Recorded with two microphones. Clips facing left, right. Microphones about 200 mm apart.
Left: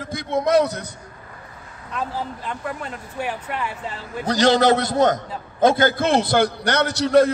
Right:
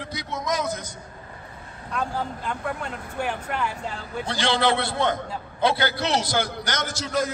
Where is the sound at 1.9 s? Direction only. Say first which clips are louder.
Even; 5° left (ahead or behind).